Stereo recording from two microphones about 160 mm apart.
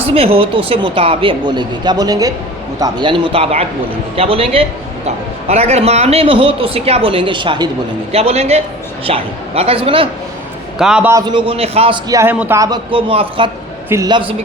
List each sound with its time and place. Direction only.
0.1 s a man's voice: 35° right (ahead or behind)
8.1 s a man's voice: 40° right (ahead or behind)
10.8 s a man's voice: 5° right (ahead or behind)
11.1 s a man's voice: 25° right (ahead or behind)
12.0 s a man's voice: 20° right (ahead or behind)
12.9 s a man's voice: 35° right (ahead or behind)